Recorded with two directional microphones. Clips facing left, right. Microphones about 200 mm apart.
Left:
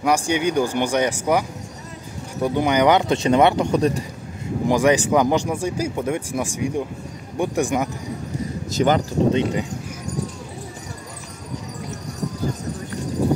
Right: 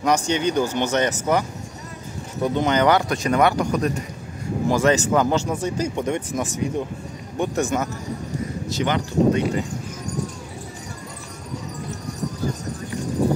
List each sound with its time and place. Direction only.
0.0 s speech: 10° left (ahead or behind)
2.4 s speech: 10° left (ahead or behind); by 3.9 s 25° left (ahead or behind)
4.6 s speech: 15° left (ahead or behind)
8.8 s speech: 40° left (ahead or behind)
9.3 s speech: 25° left (ahead or behind)